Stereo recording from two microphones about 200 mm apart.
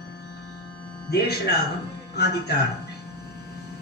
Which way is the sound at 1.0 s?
55° left (ahead or behind).